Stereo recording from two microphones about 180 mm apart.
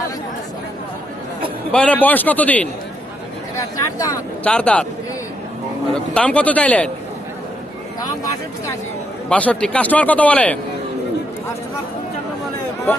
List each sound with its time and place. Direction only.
1.7 s a man's voice: 5° left (ahead or behind)
3.5 s a sound: 20° left (ahead or behind)
4.4 s a man's voice: 5° left (ahead or behind)
5.9 s a man's voice: 5° left (ahead or behind)
9.3 s a man's voice: 5° left (ahead or behind)